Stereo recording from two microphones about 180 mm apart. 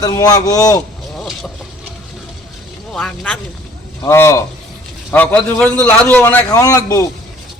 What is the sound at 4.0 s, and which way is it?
A man's voice, 15° left (ahead or behind).